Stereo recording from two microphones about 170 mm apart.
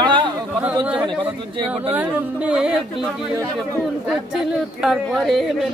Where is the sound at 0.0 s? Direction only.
25° right (ahead or behind).